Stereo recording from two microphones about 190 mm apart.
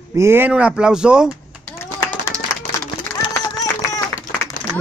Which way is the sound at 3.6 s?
20° left (ahead or behind).